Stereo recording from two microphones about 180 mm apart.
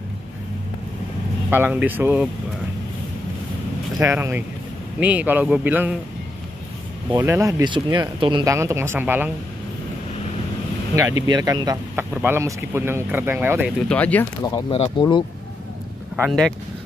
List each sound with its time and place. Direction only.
1.5 s speech: 10° right (ahead or behind)
4.0 s speech: 15° right (ahead or behind)
7.1 s speech: 15° right (ahead or behind)
11.2 s speech: 25° right (ahead or behind)
13.8 s speech: 10° left (ahead or behind)
14.4 s speech: 25° left (ahead or behind)
16.3 s speech: 5° left (ahead or behind)